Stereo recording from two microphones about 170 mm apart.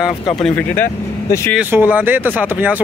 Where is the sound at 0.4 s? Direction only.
10° left (ahead or behind).